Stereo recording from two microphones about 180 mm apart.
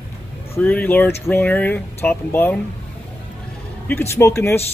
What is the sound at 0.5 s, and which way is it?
Speech, 10° left (ahead or behind).